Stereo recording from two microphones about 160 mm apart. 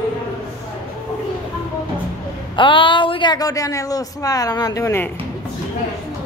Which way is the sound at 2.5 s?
30° left (ahead or behind).